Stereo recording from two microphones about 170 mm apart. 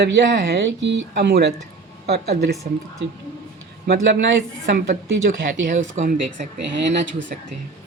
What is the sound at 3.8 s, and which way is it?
Speech, 90° right.